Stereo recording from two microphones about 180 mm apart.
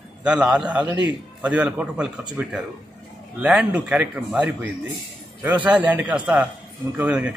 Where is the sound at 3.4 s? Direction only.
5° right (ahead or behind).